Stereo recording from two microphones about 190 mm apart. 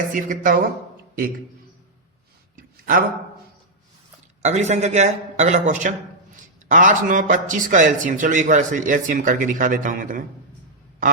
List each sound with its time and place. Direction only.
0.1 s speech: 45° right (ahead or behind)
2.6 s a sound: 45° right (ahead or behind)
4.4 s a man's voice: 35° right (ahead or behind)